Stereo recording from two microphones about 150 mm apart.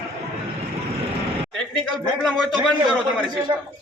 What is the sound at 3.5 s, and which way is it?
Speech, 35° right (ahead or behind).